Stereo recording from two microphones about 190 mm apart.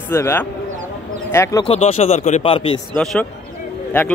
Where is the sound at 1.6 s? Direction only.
35° left (ahead or behind).